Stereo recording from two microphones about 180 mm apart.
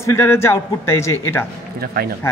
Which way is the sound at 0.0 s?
15° left (ahead or behind).